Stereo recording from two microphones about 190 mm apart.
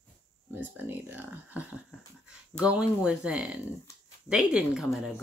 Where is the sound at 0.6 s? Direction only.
10° right (ahead or behind).